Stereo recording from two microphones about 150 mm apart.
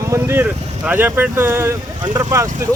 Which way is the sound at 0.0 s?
20° right (ahead or behind).